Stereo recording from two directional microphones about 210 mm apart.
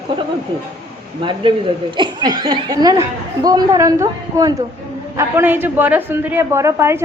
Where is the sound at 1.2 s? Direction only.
25° right (ahead or behind).